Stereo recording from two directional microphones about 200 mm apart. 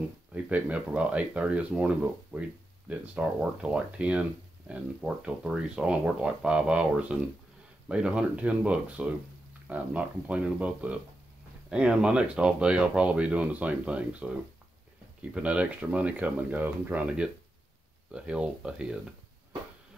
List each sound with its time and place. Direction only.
0.3 s speech: 5° right (ahead or behind)
15.3 s speech: 5° right (ahead or behind)